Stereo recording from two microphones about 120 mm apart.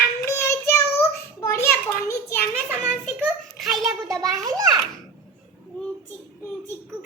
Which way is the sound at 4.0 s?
25° right (ahead or behind).